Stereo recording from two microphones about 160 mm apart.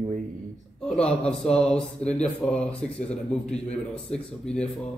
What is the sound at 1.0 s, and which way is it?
A man's voice, 5° left (ahead or behind).